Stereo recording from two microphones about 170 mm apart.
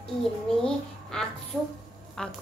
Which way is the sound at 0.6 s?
5° left (ahead or behind).